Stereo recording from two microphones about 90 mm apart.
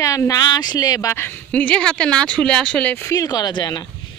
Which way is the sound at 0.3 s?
50° left (ahead or behind).